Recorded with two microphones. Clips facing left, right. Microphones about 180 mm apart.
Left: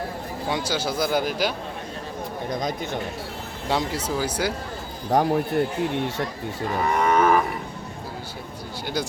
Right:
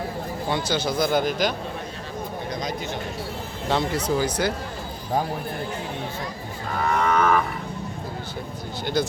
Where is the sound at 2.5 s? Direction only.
50° left (ahead or behind).